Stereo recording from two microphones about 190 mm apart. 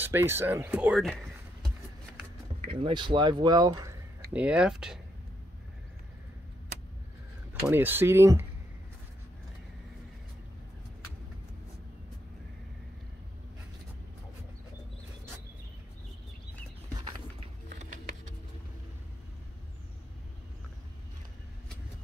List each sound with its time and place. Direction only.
0.0 s speech: 10° right (ahead or behind)
2.8 s speech: 25° right (ahead or behind)
4.3 s speech: 5° right (ahead or behind)
7.6 s speech: 10° right (ahead or behind)
17.6 s a sound: 45° right (ahead or behind)